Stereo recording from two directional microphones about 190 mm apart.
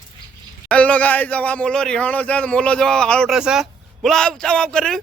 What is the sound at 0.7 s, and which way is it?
Speech, 5° left (ahead or behind).